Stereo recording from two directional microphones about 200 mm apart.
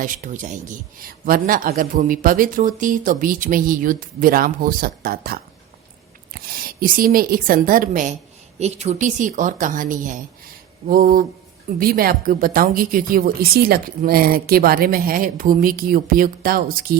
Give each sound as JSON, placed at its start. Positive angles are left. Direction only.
{"t": 0.0, "sound": "a man's voice", "side_deg": -40}